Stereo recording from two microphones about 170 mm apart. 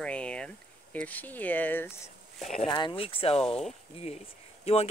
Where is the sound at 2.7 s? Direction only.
25° left (ahead or behind).